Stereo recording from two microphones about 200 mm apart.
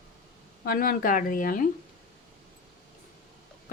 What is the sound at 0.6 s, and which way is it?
A woman's voice, 45° left (ahead or behind).